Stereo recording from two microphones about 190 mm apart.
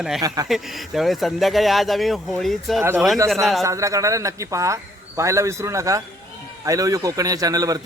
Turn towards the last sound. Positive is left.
turn(degrees=-20)  # may be behind; listen again after turning